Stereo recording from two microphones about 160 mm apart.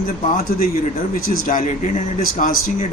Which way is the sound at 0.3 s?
65° left (ahead or behind).